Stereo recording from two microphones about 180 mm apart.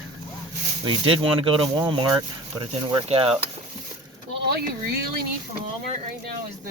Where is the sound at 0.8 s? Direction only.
30° right (ahead or behind).